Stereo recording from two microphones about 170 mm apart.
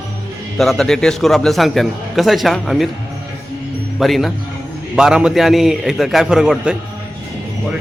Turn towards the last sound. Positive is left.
turn(degrees=-5)  # may be behind; listen again after turning